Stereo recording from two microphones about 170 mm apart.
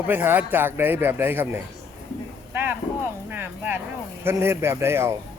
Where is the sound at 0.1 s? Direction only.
10° right (ahead or behind).